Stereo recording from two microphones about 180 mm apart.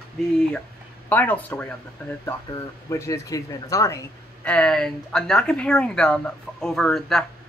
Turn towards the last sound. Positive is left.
turn(degrees=0)  # may be behind; listen again after turning